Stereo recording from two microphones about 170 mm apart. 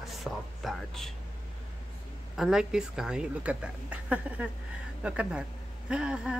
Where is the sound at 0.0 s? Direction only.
Centre (ahead or behind).